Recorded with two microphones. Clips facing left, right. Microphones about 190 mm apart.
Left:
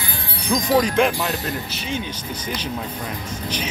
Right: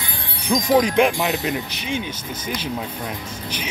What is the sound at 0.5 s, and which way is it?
Wind chime, 5° right (ahead or behind).